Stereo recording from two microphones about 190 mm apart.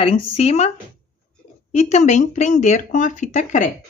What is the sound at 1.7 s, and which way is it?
Speech, 40° left (ahead or behind).